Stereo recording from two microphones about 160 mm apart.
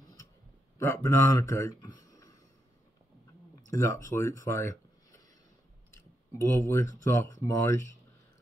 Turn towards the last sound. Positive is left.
turn(degrees=15)  # may be behind; listen again after turning